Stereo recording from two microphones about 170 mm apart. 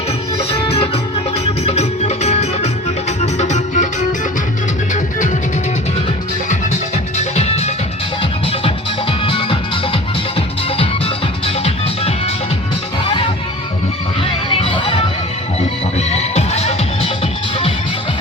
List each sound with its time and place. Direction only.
0.3 s music: 35° left (ahead or behind)
7.2 s music: 40° left (ahead or behind)
14.5 s music: 30° left (ahead or behind)